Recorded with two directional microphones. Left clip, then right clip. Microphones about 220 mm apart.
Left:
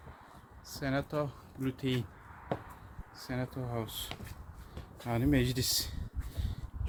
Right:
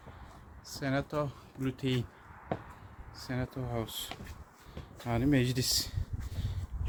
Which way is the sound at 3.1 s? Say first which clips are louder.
Even; 5° right (ahead or behind).